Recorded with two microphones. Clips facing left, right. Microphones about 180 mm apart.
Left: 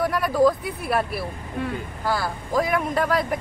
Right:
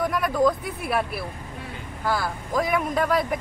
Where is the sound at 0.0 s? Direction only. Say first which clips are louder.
Left 2 dB; 5° left (ahead or behind).